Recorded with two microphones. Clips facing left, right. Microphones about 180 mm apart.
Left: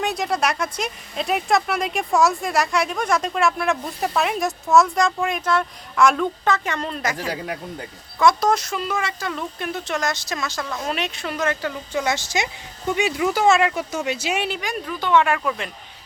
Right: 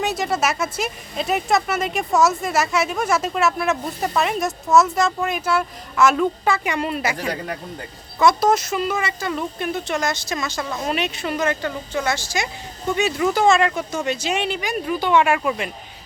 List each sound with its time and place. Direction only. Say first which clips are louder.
0.0 s speech: right 1 dB; centre (ahead or behind)
7.3 s speech: right 1 dB; 10° left (ahead or behind)
8.2 s speech: right 1 dB; 5° right (ahead or behind)
11.9 s speech: left 1 dB; 20° left (ahead or behind); by 14.8 s centre (ahead or behind)
14.8 s speech: right 1 dB; 10° right (ahead or behind)